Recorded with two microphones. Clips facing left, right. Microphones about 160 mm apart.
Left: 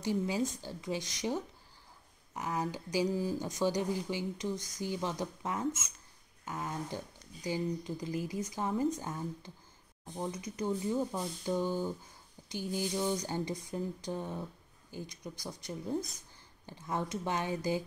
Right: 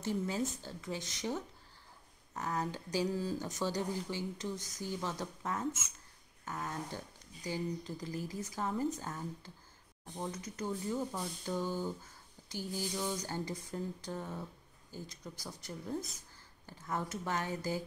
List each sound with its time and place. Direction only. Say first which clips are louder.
0.0 s speech: left 3 dB; 10° left (ahead or behind)